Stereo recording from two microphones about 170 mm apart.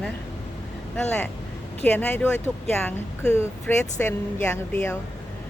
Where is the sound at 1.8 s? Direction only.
10° left (ahead or behind).